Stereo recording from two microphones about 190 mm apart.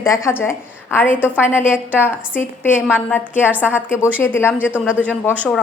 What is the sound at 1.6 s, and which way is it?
Speech, 5° right (ahead or behind).